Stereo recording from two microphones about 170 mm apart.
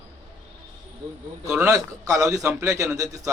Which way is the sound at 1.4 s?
5° right (ahead or behind).